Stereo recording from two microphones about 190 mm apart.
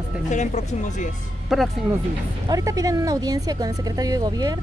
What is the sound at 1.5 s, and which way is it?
Speech, centre (ahead or behind).